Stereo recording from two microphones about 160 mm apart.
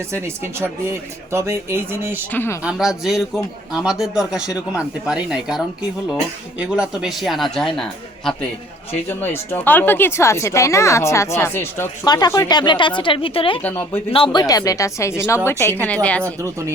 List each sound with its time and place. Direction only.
0.1 s speech: 15° right (ahead or behind)
2.3 s speech: 15° left (ahead or behind)
2.6 s a man's voice: 5° right (ahead or behind)
8.9 s speech: 15° left (ahead or behind)
12.0 s speech: 25° left (ahead or behind)
13.6 s speech: 10° left (ahead or behind)
14.1 s speech: 30° left (ahead or behind); by 16.2 s 10° left (ahead or behind)
16.2 s speech: 20° right (ahead or behind)